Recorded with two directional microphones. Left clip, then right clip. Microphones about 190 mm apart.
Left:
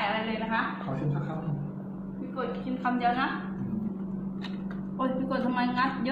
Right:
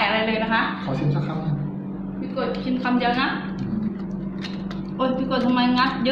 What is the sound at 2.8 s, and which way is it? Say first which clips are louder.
Speech: right 4 dB; 20° left (ahead or behind).